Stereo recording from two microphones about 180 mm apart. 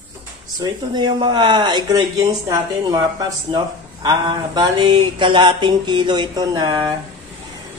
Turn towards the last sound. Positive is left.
turn(degrees=-25)  # may be behind; listen again after turning